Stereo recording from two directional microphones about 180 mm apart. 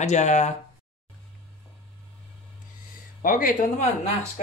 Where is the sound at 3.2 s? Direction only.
50° left (ahead or behind).